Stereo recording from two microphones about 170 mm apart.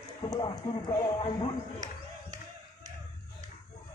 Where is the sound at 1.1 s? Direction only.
30° left (ahead or behind).